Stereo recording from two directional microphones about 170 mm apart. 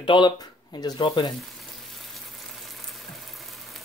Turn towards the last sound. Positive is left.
turn(degrees=0)  # may be behind; listen again after turning